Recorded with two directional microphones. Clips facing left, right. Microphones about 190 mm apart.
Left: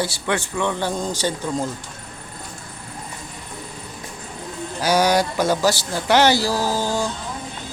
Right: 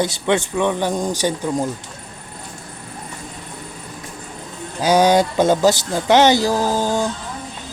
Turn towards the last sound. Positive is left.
turn(degrees=-20)  # may be behind; listen again after turning